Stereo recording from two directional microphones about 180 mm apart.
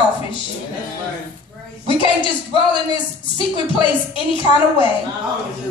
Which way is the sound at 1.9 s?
25° left (ahead or behind).